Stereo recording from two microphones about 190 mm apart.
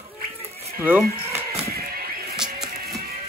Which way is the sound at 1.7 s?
55° right (ahead or behind).